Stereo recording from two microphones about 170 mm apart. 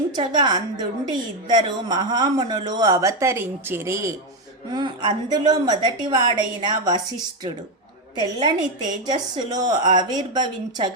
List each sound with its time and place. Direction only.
0.2 s a woman's voice: 25° right (ahead or behind)
8.2 s a woman's voice: 25° right (ahead or behind)